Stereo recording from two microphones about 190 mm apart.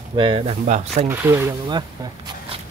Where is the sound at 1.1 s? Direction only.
10° right (ahead or behind).